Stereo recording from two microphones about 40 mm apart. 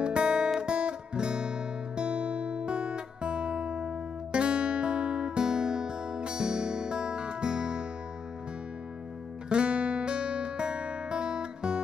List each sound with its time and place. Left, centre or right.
0.0 s guitar: right
9.5 s music: right